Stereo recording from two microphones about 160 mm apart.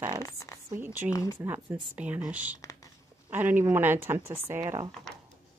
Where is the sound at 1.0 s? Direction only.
20° left (ahead or behind).